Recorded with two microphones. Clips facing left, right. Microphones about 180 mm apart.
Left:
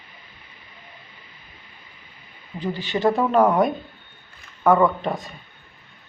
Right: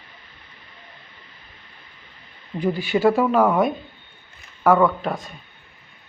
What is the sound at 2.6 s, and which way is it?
Speech, 10° right (ahead or behind).